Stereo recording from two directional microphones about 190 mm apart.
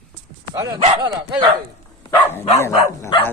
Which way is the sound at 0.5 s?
20° right (ahead or behind).